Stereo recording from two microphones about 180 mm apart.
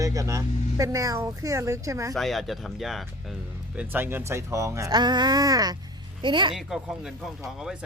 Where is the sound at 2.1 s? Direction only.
Centre (ahead or behind).